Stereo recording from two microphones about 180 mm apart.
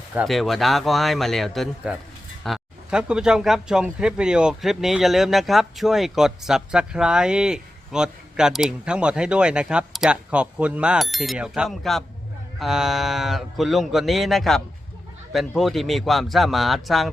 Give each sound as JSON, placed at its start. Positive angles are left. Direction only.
{"t": 0.1, "sound": "speech", "side_deg": -5}